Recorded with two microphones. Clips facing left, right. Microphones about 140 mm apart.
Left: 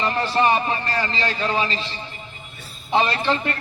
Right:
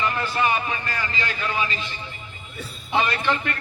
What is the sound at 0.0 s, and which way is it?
A man's voice, 30° left (ahead or behind).